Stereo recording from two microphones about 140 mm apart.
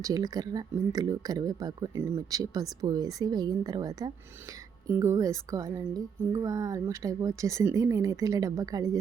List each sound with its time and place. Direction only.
0.0 s speech: 25° right (ahead or behind)